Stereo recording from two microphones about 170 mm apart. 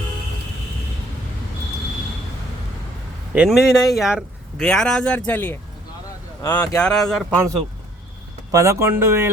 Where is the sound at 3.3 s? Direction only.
5° right (ahead or behind).